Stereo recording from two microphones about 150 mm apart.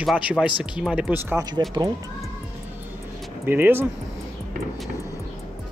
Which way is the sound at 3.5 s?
15° right (ahead or behind).